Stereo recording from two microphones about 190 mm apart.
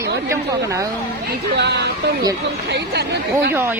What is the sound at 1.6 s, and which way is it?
Speech, 60° right (ahead or behind).